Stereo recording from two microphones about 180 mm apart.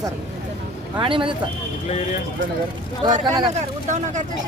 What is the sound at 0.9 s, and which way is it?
Speech, 25° right (ahead or behind).